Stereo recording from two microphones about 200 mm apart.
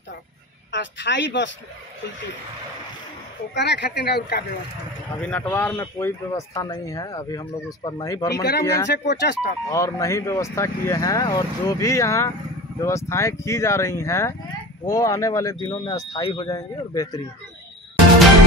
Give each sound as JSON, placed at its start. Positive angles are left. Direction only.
{"t": 0.7, "sound": "speech", "side_deg": 65}
{"t": 3.5, "sound": "speech", "side_deg": 60}
{"t": 5.1, "sound": "speech", "side_deg": 5}
{"t": 8.8, "sound": "speech", "side_deg": 60}
{"t": 9.7, "sound": "speech", "side_deg": 15}